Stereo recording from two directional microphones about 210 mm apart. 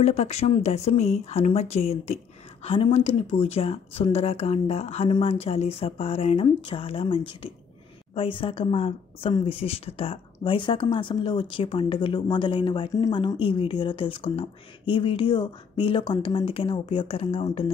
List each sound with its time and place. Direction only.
0.0 s a woman's voice: 30° left (ahead or behind)